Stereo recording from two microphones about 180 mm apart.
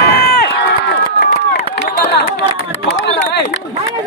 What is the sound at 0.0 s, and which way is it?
Run, 60° left (ahead or behind).